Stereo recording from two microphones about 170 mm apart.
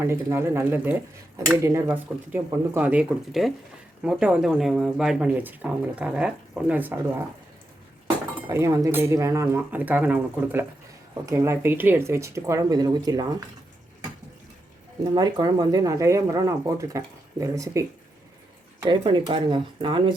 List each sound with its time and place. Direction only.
0.0 s speech: 15° right (ahead or behind)
8.4 s speech: 15° right (ahead or behind)
15.1 s speech: 25° right (ahead or behind)
18.9 s speech: 25° right (ahead or behind)